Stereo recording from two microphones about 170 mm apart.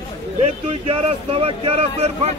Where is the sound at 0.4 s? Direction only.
35° right (ahead or behind).